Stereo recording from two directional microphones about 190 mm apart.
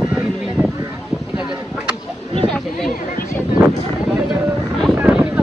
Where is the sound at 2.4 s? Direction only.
5° left (ahead or behind).